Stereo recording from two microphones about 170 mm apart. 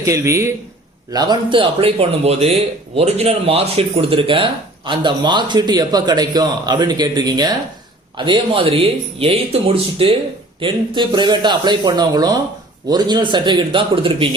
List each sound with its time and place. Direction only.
0.0 s a man's voice: 15° right (ahead or behind)